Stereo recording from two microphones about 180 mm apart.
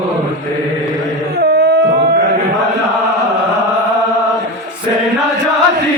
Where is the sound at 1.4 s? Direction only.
60° right (ahead or behind).